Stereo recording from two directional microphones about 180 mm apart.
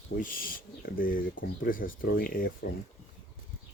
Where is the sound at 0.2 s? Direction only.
50° left (ahead or behind).